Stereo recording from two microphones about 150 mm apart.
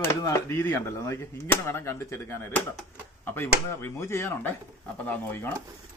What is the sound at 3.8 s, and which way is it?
Speech, 15° left (ahead or behind).